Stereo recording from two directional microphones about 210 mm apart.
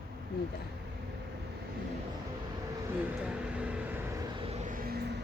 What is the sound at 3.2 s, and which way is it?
Vehicle, 5° right (ahead or behind).